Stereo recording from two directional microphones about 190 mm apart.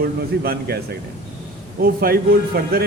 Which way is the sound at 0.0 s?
55° right (ahead or behind).